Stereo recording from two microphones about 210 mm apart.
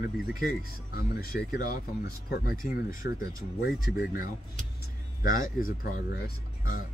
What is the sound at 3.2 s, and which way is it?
Speech, 15° right (ahead or behind).